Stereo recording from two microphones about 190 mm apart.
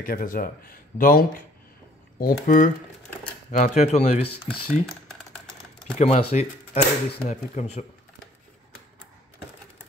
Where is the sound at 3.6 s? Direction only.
35° left (ahead or behind).